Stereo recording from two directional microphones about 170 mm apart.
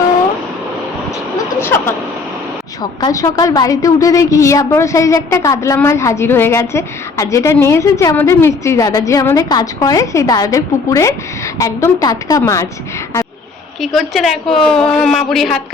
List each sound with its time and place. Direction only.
1.5 s a sound: 15° left (ahead or behind)
3.0 s a woman's voice: 20° left (ahead or behind)
13.8 s speech: centre (ahead or behind)